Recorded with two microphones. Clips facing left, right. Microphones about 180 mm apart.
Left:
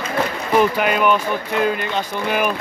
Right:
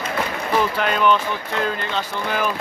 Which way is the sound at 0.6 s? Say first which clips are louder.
Left 4 dB; 10° left (ahead or behind).